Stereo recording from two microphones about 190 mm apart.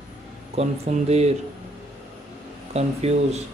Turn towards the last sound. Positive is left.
turn(degrees=-35)  # may be behind; listen again after turning